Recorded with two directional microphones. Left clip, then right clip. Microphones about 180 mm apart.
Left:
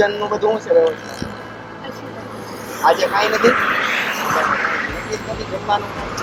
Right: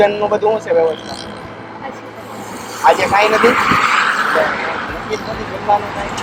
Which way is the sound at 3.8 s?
75° right (ahead or behind).